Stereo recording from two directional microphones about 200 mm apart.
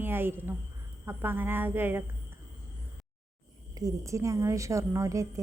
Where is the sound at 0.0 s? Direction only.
10° right (ahead or behind).